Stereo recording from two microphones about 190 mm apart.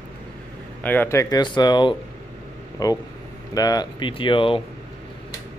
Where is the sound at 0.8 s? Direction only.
10° left (ahead or behind); by 4.6 s 25° left (ahead or behind).